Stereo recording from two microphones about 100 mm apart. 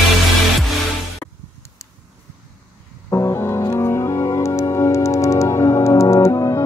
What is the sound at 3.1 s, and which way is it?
Music, 25° left (ahead or behind).